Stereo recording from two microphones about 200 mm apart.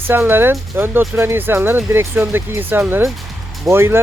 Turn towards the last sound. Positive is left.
turn(degrees=-10)  # may be behind; listen again after turning